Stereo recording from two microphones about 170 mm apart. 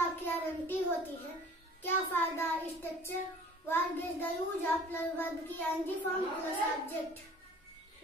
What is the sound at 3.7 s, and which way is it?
A child's voice, 10° left (ahead or behind).